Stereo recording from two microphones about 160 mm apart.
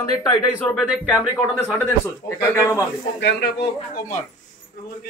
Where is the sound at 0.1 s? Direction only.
25° left (ahead or behind).